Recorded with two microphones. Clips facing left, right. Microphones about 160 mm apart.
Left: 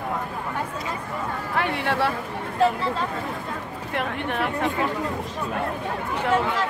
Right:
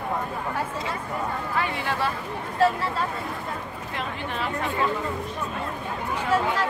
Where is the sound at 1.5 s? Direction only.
65° left (ahead or behind).